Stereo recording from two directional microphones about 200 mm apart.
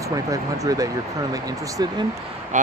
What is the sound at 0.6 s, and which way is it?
Speech, 15° right (ahead or behind).